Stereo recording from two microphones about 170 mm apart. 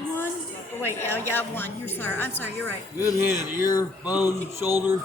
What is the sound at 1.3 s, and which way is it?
A woman's voice, 10° left (ahead or behind).